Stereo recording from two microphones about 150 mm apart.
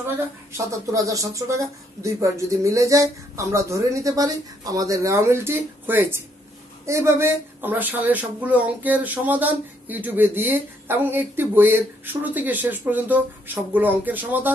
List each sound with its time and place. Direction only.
0.0 s speech: 20° right (ahead or behind)